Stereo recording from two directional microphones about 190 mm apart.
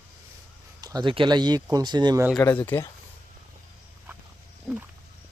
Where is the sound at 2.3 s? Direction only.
10° left (ahead or behind).